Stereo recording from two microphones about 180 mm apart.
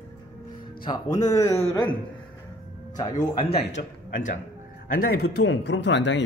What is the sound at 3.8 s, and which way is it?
Speech, 55° left (ahead or behind).